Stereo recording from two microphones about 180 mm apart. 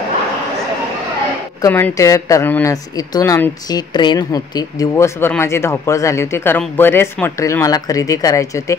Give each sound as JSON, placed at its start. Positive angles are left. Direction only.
{"t": 1.6, "sound": "speech", "side_deg": 15}